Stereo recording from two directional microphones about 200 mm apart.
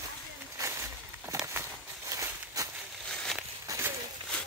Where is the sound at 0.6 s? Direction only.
15° right (ahead or behind).